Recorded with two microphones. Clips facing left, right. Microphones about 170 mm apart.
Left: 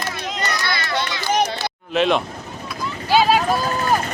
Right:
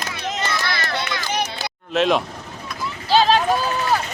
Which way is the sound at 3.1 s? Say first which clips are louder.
Even; 10° left (ahead or behind).